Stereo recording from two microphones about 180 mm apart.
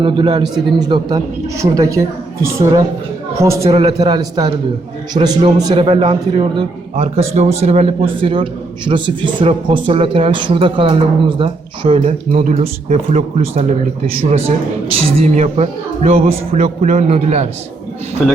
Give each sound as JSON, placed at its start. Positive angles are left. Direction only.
{"t": 0.0, "sound": "a man's voice", "side_deg": -25}
{"t": 3.7, "sound": "speech", "side_deg": -35}
{"t": 3.9, "sound": "a man's voice", "side_deg": -20}
{"t": 14.9, "sound": "speech", "side_deg": -35}